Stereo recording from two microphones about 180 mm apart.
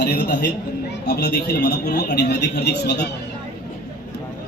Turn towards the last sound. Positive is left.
turn(degrees=70)  # may be behind; listen again after turning